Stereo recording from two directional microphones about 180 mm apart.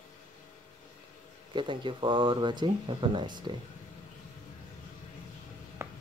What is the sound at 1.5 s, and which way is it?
Speech, 25° right (ahead or behind).